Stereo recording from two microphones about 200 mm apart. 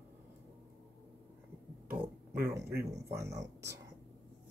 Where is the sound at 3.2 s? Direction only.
15° right (ahead or behind).